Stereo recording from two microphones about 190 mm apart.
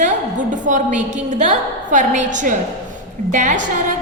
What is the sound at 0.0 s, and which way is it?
A woman's voice, 40° right (ahead or behind).